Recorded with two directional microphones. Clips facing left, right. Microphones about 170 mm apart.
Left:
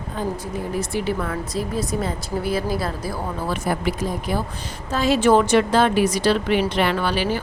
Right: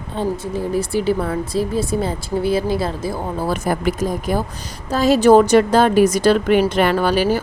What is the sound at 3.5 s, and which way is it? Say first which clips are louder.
A woman's voice: right 3 dB; 45° right (ahead or behind).